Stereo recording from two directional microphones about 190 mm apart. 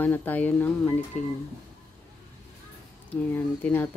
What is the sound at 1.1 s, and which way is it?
Speech, 40° left (ahead or behind).